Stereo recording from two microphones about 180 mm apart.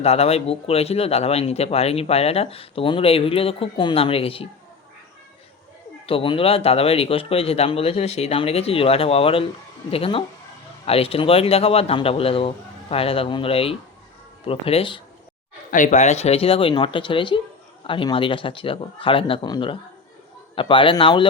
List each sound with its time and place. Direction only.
0.0 s speech: 35° left (ahead or behind)
6.1 s speech: 30° left (ahead or behind)
15.7 s speech: 45° left (ahead or behind); by 21.2 s 25° left (ahead or behind)